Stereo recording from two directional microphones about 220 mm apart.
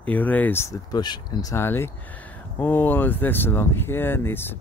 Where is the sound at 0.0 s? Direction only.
5° left (ahead or behind).